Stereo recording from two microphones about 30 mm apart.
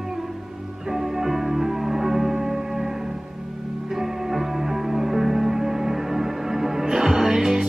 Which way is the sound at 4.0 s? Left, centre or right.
Centre.